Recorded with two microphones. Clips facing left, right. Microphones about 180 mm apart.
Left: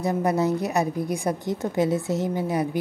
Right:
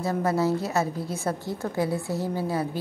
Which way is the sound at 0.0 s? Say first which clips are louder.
Left 2 dB; 20° left (ahead or behind).